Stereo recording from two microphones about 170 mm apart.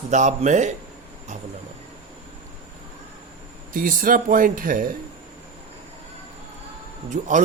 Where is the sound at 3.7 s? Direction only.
55° right (ahead or behind).